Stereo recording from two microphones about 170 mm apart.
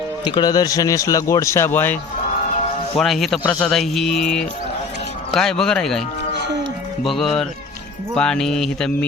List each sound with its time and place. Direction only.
0.3 s speech: 25° left (ahead or behind)
3.0 s speech: centre (ahead or behind)
7.0 s speech: centre (ahead or behind)